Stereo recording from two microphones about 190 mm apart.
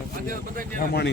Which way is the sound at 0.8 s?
55° left (ahead or behind).